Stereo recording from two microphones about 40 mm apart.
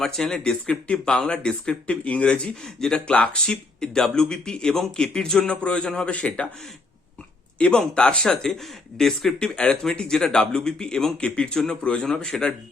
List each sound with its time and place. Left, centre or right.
0.0 s speech: centre
1.9 s speech: left
3.8 s speech: centre
5.6 s speech: left
7.8 s speech: left
12.3 s speech: centre